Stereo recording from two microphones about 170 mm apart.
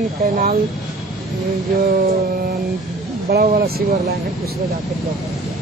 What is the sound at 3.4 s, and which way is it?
Speech, 60° right (ahead or behind).